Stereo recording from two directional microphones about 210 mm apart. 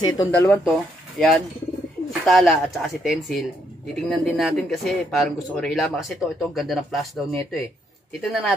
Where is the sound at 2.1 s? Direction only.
Centre (ahead or behind).